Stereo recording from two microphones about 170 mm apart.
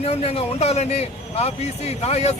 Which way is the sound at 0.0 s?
35° left (ahead or behind).